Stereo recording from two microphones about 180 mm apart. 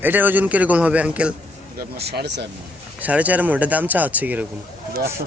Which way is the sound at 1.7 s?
65° right (ahead or behind).